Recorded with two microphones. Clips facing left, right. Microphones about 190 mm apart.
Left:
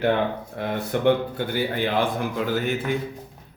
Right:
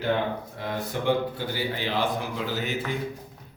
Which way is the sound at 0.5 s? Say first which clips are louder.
Left 5 dB; 60° left (ahead or behind).